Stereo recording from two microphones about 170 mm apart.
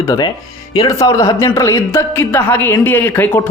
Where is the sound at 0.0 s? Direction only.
20° left (ahead or behind).